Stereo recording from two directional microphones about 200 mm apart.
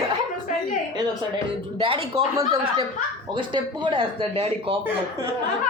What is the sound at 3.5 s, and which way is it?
Speech, 25° right (ahead or behind).